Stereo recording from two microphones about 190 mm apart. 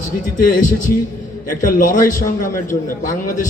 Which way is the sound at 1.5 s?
45° left (ahead or behind).